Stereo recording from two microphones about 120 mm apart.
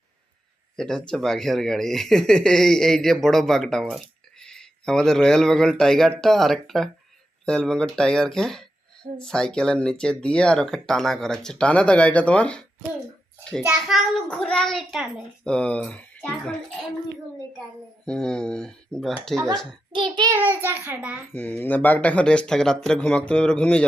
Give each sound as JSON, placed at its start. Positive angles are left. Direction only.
{"t": 0.8, "sound": "speech", "side_deg": 5}
{"t": 13.8, "sound": "speech", "side_deg": 5}
{"t": 18.0, "sound": "speech", "side_deg": 5}
{"t": 19.9, "sound": "a child's voice", "side_deg": -40}
{"t": 20.3, "sound": "a child's voice", "side_deg": -15}
{"t": 21.3, "sound": "speech", "side_deg": 15}